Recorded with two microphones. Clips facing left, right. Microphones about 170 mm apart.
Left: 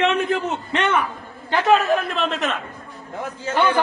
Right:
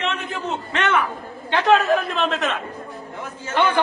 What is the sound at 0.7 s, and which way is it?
Speech, 10° left (ahead or behind).